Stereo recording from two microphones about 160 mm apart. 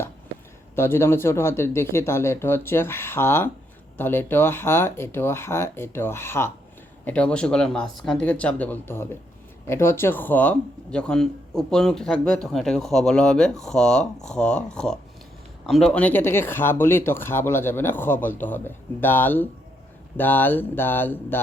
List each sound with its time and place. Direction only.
0.8 s speech: 15° left (ahead or behind)